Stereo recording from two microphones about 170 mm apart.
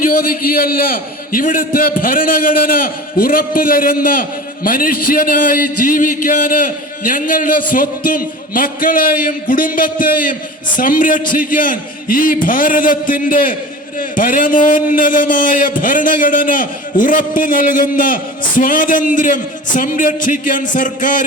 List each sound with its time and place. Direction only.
0.0 s a man's voice: 55° left (ahead or behind)